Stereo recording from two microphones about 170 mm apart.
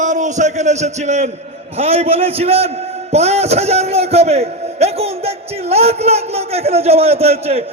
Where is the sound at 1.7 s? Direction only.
35° right (ahead or behind).